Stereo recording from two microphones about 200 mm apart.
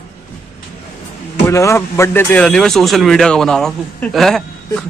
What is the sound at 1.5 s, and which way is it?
Speech, 15° left (ahead or behind).